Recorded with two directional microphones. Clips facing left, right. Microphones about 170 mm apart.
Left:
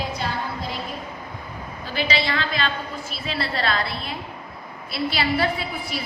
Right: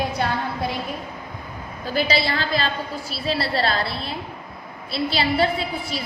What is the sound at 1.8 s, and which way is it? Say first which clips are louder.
A woman's voice: right 3 dB; 40° right (ahead or behind).